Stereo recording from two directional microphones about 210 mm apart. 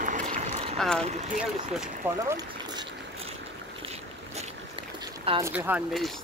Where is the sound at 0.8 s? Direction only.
5° left (ahead or behind).